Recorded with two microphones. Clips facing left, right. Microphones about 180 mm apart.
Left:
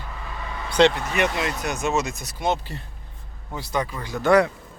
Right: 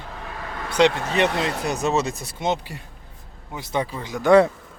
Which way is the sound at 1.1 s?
30° right (ahead or behind).